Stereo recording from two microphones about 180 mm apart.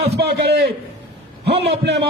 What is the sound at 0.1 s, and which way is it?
A man's voice, 65° right (ahead or behind).